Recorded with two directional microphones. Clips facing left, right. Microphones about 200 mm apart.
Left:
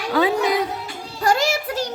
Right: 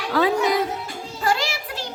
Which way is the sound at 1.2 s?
45° left (ahead or behind).